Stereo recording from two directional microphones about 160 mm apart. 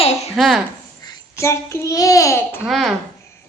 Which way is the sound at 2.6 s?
Centre (ahead or behind).